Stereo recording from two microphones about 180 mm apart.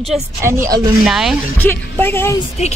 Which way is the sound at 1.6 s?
10° left (ahead or behind).